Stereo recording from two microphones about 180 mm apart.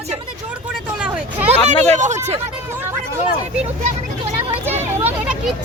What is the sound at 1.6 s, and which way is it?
Speech, 40° right (ahead or behind).